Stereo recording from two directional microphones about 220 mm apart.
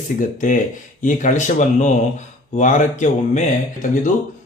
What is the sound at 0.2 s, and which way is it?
Speech, 35° left (ahead or behind).